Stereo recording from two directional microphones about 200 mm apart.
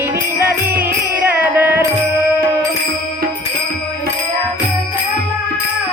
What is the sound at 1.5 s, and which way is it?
Music, 10° right (ahead or behind).